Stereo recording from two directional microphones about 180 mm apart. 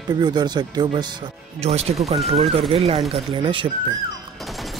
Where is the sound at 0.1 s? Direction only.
25° right (ahead or behind).